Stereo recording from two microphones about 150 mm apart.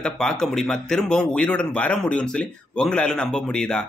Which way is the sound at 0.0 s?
5° left (ahead or behind).